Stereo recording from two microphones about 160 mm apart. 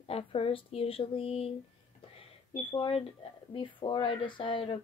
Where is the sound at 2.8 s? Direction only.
35° left (ahead or behind).